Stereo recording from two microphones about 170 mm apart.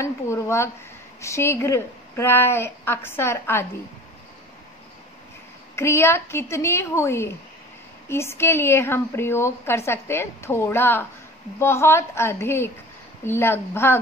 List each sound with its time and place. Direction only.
0.0 s a woman's voice: 15° left (ahead or behind)
5.8 s a woman's voice: 15° left (ahead or behind)